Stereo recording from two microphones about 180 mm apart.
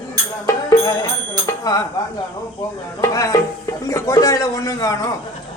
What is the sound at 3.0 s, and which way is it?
Speech, 20° left (ahead or behind).